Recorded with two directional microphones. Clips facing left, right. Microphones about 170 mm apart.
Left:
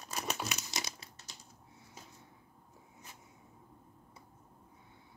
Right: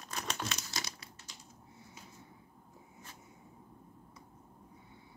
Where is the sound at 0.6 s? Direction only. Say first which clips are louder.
Left 1 dB; 20° left (ahead or behind).